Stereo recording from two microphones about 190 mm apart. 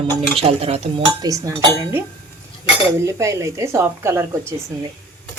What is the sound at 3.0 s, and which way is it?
Speech, 15° right (ahead or behind).